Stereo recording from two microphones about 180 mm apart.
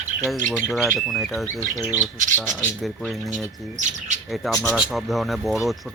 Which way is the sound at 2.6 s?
5° left (ahead or behind).